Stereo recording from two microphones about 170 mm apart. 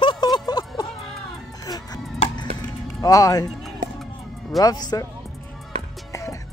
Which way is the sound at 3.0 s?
20° left (ahead or behind).